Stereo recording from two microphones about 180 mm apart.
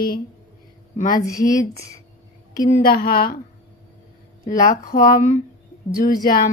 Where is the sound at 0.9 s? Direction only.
50° left (ahead or behind).